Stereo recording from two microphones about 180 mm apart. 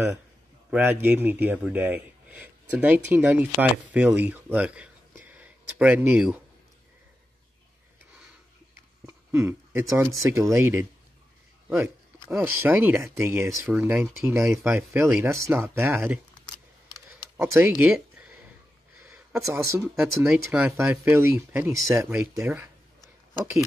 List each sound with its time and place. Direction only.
0.7 s speech: 10° right (ahead or behind)
9.0 s speech: 15° right (ahead or behind)
16.9 s a sound: 15° right (ahead or behind)
19.0 s speech: 10° right (ahead or behind)